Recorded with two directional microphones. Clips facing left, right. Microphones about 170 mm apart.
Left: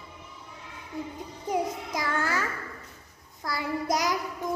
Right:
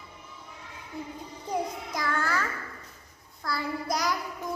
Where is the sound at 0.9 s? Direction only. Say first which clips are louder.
Left 2 dB; 15° left (ahead or behind).